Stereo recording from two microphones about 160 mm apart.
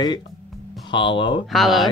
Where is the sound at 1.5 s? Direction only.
Centre (ahead or behind).